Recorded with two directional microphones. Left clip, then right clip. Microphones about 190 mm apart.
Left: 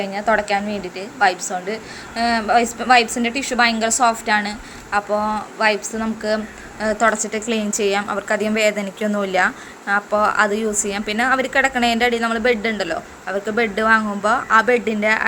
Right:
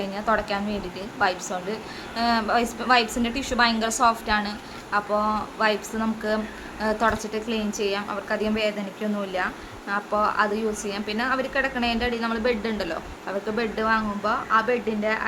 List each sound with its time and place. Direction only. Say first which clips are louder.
0.0 s a woman's voice: left 6 dB; 10° left (ahead or behind); by 15.3 s 25° left (ahead or behind)